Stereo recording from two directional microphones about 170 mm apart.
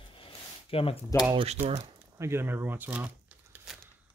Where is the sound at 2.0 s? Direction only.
15° right (ahead or behind).